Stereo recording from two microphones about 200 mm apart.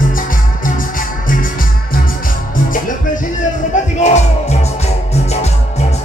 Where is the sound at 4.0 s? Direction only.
35° left (ahead or behind).